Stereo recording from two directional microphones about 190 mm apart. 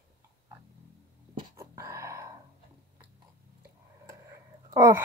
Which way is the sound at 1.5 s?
15° right (ahead or behind).